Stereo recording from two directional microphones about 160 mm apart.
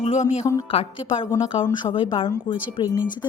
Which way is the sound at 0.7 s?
35° left (ahead or behind).